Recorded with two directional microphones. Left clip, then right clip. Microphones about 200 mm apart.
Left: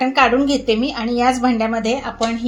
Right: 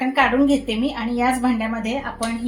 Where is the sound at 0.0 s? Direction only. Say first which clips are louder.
Left 3 dB; 35° left (ahead or behind).